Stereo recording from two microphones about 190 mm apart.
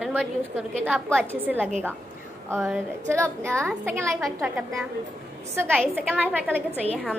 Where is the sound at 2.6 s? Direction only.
Centre (ahead or behind).